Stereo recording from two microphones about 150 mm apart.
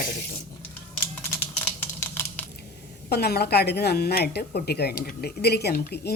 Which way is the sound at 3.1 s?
90° left.